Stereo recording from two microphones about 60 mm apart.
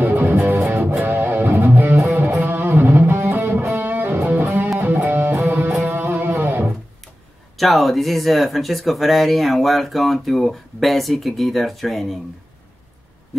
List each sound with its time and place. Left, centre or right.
0.0 s music: right
7.5 s speech: centre